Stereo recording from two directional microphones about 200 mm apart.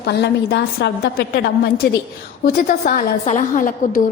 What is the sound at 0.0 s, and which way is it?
A woman's voice, 55° left (ahead or behind).